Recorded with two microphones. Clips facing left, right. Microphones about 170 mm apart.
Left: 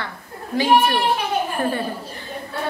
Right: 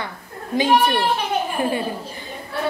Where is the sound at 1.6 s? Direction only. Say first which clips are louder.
Right 1 dB; 15° right (ahead or behind).